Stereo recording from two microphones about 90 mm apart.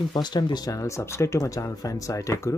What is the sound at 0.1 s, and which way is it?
Speech, 50° left (ahead or behind).